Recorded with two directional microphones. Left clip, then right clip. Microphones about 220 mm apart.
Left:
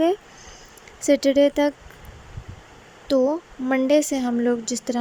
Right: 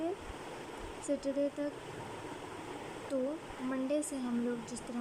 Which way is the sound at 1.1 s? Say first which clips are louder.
Left 17 dB; 35° left (ahead or behind).